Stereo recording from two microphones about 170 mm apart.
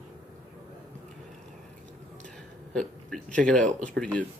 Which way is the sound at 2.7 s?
5° left (ahead or behind).